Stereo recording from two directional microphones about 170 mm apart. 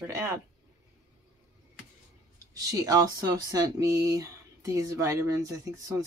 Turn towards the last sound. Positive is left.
turn(degrees=-20)  # may be behind; listen again after turning